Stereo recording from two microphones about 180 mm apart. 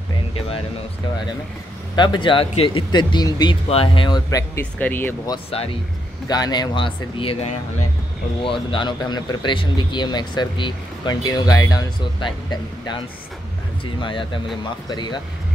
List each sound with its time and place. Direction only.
2.0 s speech: 25° left (ahead or behind)
4.7 s speech: 10° left (ahead or behind)
5.3 s speech: 35° left (ahead or behind)
6.2 s speech: 20° left (ahead or behind)